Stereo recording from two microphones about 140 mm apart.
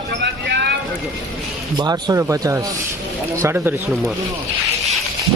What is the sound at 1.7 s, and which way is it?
Speech, 30° right (ahead or behind).